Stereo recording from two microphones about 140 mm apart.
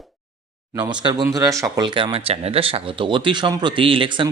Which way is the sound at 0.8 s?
30° right (ahead or behind).